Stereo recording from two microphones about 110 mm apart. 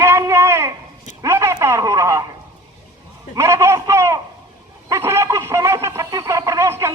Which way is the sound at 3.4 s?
25° right (ahead or behind).